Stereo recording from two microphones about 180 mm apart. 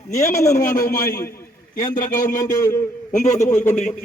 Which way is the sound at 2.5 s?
15° left (ahead or behind).